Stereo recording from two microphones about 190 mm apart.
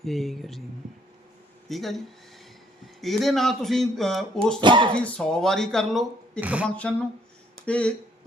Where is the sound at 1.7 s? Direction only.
Centre (ahead or behind).